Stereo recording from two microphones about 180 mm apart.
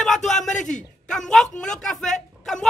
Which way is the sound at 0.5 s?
45° left (ahead or behind).